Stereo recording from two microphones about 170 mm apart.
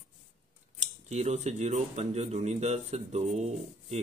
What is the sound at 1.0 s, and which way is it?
Speech, 40° right (ahead or behind).